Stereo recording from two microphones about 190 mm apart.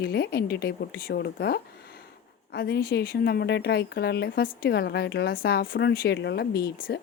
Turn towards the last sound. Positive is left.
turn(degrees=55)  # may be behind; listen again after turning